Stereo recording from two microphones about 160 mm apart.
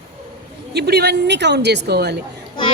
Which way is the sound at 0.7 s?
90° right.